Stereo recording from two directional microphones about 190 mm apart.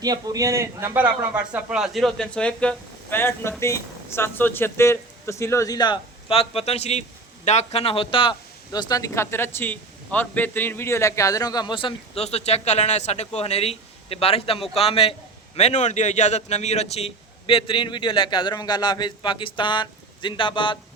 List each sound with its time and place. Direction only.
0.0 s a man's voice: 20° right (ahead or behind); by 20.7 s 25° left (ahead or behind)